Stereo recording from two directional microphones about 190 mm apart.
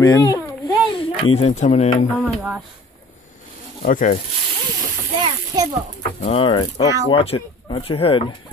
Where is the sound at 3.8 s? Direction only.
45° left (ahead or behind).